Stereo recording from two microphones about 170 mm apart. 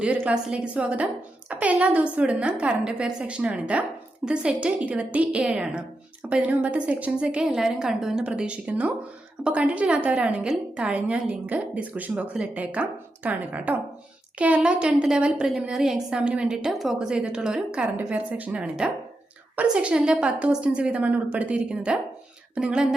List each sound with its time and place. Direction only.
0.0 s a woman's voice: 5° right (ahead or behind)